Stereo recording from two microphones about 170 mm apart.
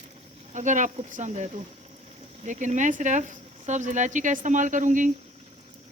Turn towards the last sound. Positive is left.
turn(degrees=-50)  # may be behind; listen again after turning